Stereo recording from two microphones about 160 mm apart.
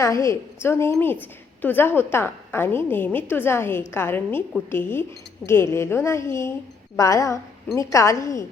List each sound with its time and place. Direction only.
0.0 s a woman's voice: 20° left (ahead or behind)